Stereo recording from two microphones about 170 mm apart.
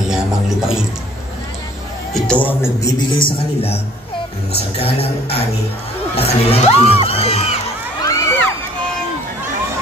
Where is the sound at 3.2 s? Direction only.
35° left (ahead or behind).